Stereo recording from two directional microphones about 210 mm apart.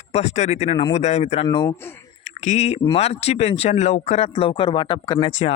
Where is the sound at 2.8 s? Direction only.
30° left (ahead or behind).